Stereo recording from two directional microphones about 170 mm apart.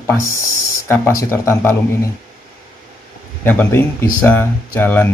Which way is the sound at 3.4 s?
10° left (ahead or behind).